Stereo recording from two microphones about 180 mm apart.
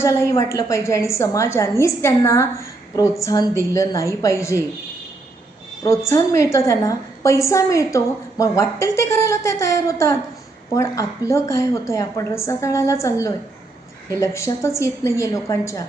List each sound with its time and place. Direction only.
0.0 s a woman's voice: 15° left (ahead or behind)
5.8 s a woman's voice: 15° left (ahead or behind)